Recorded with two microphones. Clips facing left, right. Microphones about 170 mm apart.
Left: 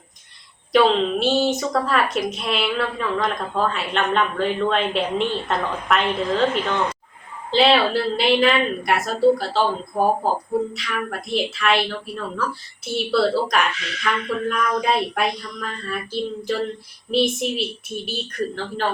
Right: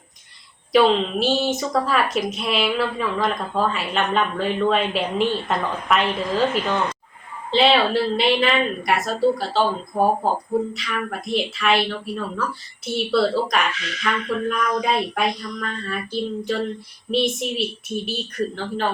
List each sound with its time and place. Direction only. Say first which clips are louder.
1.2 s a woman's voice: left 1 dB; centre (ahead or behind)